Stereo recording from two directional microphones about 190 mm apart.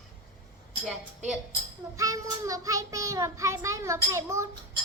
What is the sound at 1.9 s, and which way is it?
A child's voice, 15° right (ahead or behind).